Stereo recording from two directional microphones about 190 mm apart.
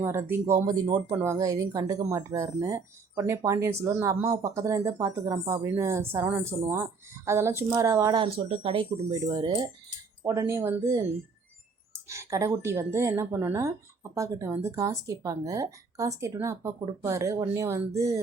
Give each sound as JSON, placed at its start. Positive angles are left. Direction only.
{"t": 0.0, "sound": "speech", "side_deg": -15}
{"t": 12.0, "sound": "speech", "side_deg": -15}